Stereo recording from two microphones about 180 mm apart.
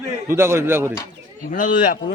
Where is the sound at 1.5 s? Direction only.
50° left (ahead or behind).